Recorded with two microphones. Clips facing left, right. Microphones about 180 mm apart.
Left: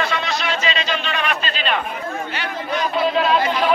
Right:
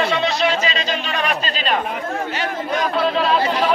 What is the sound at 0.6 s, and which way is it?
Speech, 40° right (ahead or behind).